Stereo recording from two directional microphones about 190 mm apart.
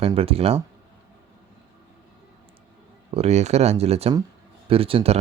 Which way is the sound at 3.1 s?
35° right (ahead or behind).